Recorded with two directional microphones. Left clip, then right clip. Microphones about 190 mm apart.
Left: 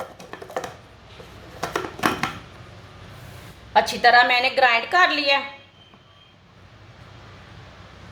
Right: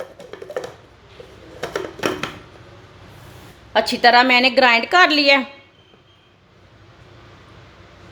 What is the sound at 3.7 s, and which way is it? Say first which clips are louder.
A woman's voice: right 2 dB; 45° right (ahead or behind).